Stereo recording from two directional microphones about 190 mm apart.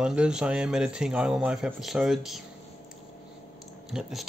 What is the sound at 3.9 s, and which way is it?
Speech, centre (ahead or behind).